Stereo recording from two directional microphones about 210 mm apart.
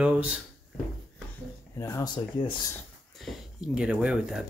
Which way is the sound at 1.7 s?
15° left (ahead or behind).